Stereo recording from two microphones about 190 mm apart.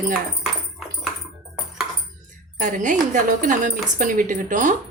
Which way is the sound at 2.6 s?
45° right (ahead or behind).